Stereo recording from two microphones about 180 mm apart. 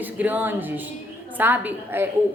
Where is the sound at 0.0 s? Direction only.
10° right (ahead or behind).